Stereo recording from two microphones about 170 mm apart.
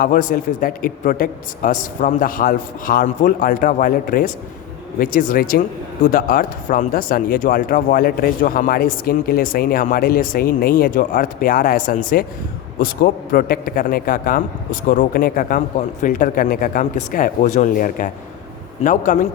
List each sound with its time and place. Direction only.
0.0 s a man's voice: 50° left (ahead or behind)